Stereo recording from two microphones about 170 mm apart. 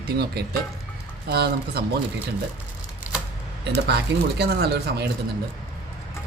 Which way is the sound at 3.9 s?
70° right (ahead or behind).